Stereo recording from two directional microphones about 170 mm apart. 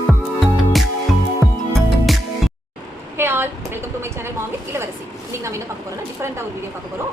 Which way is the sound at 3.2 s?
15° right (ahead or behind).